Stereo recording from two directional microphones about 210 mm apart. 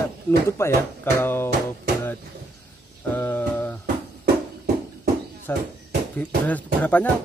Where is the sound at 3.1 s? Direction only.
10° left (ahead or behind).